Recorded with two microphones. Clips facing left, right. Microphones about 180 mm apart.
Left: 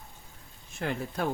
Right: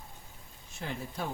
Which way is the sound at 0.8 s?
65° left (ahead or behind).